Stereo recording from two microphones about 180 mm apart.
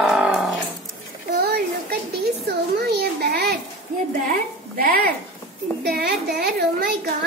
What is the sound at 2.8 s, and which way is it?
A woman's voice, 65° right (ahead or behind).